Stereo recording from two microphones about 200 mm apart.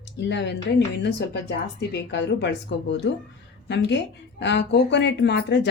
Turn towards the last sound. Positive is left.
turn(degrees=60)  # may be behind; listen again after turning